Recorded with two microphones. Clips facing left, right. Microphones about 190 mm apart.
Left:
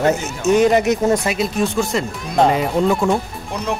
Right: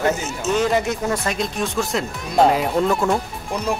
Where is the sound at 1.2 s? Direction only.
5° left (ahead or behind).